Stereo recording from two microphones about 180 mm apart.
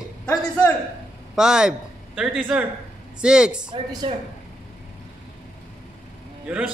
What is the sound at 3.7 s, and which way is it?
Speech, 25° right (ahead or behind).